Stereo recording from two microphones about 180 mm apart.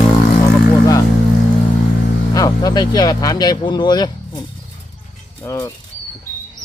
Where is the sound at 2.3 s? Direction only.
20° left (ahead or behind).